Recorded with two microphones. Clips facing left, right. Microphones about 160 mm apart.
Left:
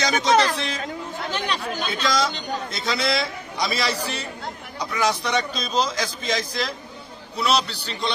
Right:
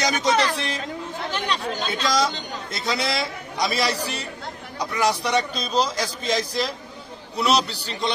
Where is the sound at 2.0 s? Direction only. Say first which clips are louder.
Right 1 dB; 10° right (ahead or behind).